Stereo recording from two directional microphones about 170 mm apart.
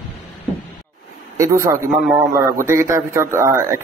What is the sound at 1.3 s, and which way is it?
Speech, 15° right (ahead or behind).